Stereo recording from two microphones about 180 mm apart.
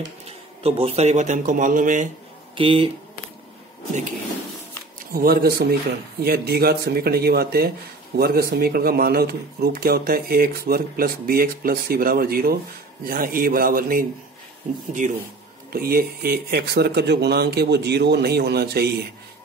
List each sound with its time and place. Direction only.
0.6 s a man's voice: 35° right (ahead or behind)
2.5 s speech: 30° right (ahead or behind)
5.1 s a man's voice: 55° right (ahead or behind)
15.7 s speech: 55° right (ahead or behind)